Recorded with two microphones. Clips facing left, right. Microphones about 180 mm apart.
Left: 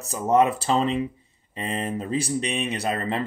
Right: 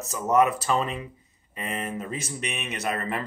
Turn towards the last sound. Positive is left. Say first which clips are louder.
# left 3 dB
turn(degrees=30)  # may be behind; listen again after turning